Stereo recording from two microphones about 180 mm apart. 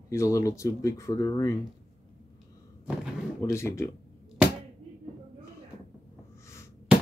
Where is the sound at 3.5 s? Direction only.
15° left (ahead or behind).